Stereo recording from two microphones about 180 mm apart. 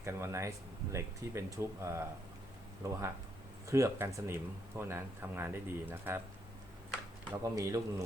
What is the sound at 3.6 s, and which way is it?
Speech, 15° right (ahead or behind).